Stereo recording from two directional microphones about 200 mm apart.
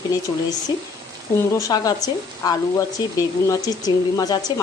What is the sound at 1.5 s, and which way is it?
Speech, 15° left (ahead or behind).